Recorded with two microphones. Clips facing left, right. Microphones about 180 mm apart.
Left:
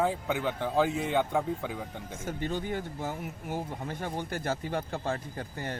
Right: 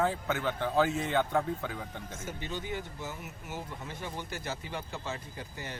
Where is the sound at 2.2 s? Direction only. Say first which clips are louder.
Left 6 dB; 55° left (ahead or behind).